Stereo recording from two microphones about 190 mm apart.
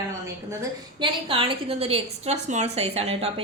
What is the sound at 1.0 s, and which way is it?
A woman's voice, 25° right (ahead or behind).